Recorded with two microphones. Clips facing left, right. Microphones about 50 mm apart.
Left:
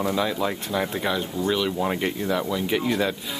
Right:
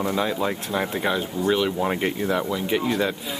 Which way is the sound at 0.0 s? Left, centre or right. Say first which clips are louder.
Even; centre.